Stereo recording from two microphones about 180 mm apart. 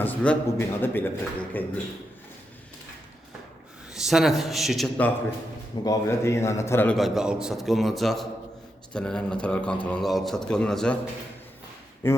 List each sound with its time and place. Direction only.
0.0 s a man's voice: 10° left (ahead or behind)
3.9 s a man's voice: centre (ahead or behind)
5.8 s a man's voice: 20° left (ahead or behind)
6.9 s a man's voice: centre (ahead or behind)
12.0 s a man's voice: 15° left (ahead or behind)